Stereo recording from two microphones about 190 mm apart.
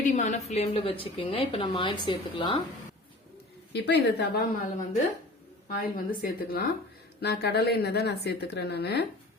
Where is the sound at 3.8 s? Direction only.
60° left (ahead or behind).